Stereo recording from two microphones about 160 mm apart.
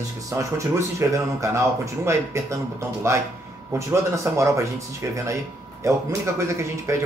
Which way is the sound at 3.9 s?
20° right (ahead or behind).